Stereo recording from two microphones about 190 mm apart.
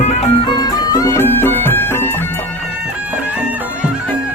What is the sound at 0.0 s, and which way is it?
Music, 35° left (ahead or behind).